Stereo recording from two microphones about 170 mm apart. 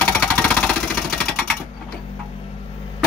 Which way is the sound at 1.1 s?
5° left (ahead or behind).